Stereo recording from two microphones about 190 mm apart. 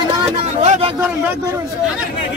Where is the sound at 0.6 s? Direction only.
35° right (ahead or behind).